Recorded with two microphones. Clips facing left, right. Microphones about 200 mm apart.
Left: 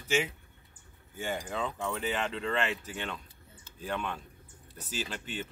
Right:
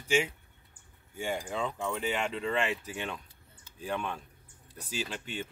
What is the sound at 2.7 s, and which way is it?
Speech, 10° right (ahead or behind).